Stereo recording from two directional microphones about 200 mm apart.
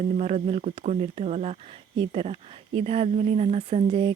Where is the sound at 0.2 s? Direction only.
35° right (ahead or behind).